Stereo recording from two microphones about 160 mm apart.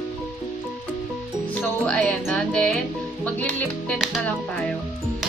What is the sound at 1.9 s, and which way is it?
Speech, 5° left (ahead or behind).